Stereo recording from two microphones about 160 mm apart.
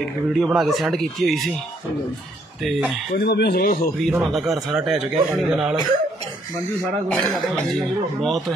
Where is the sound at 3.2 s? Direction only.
90° left; by 3.9 s 60° left (ahead or behind).